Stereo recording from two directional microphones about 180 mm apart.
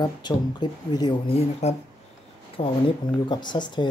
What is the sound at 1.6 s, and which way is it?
Speech, 40° left (ahead or behind).